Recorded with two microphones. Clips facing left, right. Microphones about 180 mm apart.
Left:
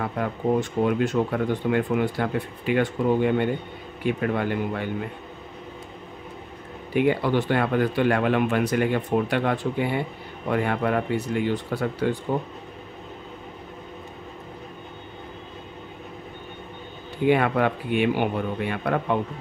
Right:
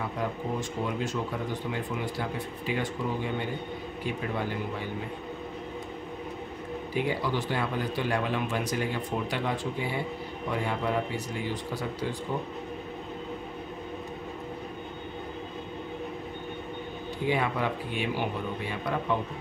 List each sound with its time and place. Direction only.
0.0 s speech: 60° left (ahead or behind)
6.9 s speech: 60° left (ahead or behind)
17.3 s speech: 60° left (ahead or behind)